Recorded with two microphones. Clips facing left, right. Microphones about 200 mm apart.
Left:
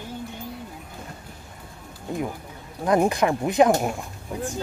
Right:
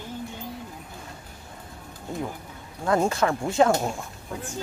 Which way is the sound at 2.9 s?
15° left (ahead or behind).